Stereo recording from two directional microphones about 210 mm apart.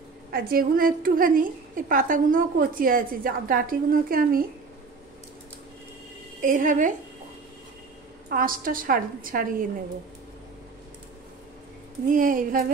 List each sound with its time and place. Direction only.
0.3 s a woman's voice: 45° right (ahead or behind)
6.4 s a woman's voice: 40° right (ahead or behind)
8.3 s a woman's voice: 40° right (ahead or behind)
12.1 s a woman's voice: 40° right (ahead or behind)